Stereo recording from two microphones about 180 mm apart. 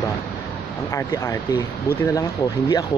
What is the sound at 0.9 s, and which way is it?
Speech, 15° left (ahead or behind).